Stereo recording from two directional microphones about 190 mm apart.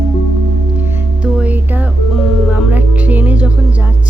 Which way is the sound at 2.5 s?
10° right (ahead or behind).